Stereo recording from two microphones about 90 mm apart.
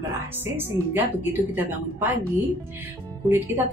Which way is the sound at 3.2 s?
25° right (ahead or behind).